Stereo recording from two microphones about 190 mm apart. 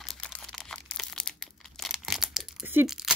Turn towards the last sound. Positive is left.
turn(degrees=0)  # may be behind; listen again after turning